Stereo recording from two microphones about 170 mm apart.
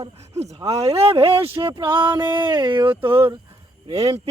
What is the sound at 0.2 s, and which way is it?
Speech, 40° right (ahead or behind).